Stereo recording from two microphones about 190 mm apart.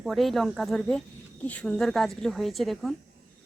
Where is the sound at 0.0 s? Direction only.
Centre (ahead or behind).